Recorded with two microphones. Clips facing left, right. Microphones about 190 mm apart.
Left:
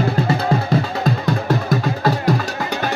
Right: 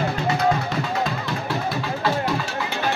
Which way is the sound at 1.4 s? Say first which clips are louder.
Left 5 dB; 45° left (ahead or behind).